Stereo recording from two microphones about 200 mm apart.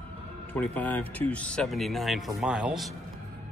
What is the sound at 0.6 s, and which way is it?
Speech, 10° left (ahead or behind).